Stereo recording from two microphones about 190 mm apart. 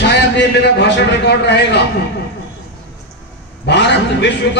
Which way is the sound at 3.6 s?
60° left (ahead or behind).